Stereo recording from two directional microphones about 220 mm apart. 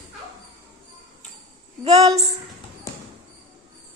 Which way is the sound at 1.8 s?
15° right (ahead or behind).